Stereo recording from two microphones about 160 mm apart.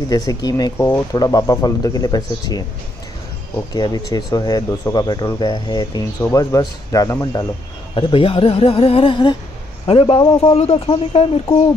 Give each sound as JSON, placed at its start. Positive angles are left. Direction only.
{"t": 0.1, "sound": "speech", "side_deg": 25}
{"t": 3.7, "sound": "speech", "side_deg": 25}
{"t": 7.9, "sound": "speech", "side_deg": 35}